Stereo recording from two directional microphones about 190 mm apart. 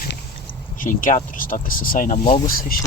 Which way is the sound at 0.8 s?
45° left (ahead or behind).